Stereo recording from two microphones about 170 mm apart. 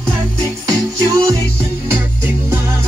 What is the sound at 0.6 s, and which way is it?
Music, 20° right (ahead or behind).